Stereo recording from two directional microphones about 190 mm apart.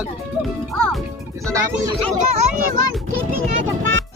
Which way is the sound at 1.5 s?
15° right (ahead or behind).